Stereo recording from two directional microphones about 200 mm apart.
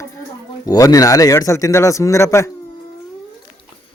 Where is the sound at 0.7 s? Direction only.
15° left (ahead or behind).